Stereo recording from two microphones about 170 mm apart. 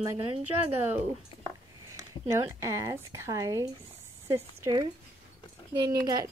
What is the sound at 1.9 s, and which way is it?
A woman's voice, 20° right (ahead or behind).